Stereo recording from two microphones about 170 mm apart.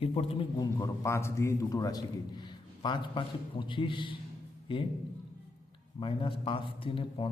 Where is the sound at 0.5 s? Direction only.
20° left (ahead or behind).